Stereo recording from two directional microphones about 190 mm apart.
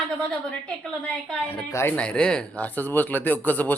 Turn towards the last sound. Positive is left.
turn(degrees=10)  # may be behind; listen again after turning